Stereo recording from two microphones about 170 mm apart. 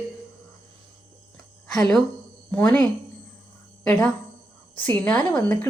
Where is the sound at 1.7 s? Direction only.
5° left (ahead or behind).